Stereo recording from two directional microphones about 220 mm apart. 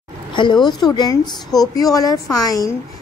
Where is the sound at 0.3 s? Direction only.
20° left (ahead or behind).